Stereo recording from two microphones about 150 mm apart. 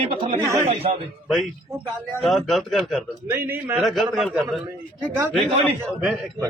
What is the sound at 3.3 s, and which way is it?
Speech, 15° right (ahead or behind).